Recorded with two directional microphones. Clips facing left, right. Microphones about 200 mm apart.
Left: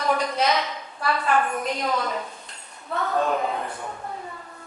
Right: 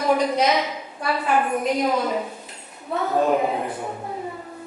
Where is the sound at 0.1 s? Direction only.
10° right (ahead or behind).